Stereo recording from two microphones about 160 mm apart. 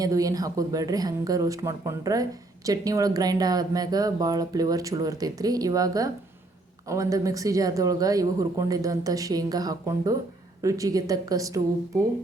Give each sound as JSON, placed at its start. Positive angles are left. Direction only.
{"t": 0.0, "sound": "speech", "side_deg": -20}